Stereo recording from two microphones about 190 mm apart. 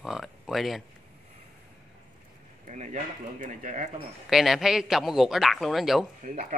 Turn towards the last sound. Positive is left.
turn(degrees=-40)  # may be behind; listen again after turning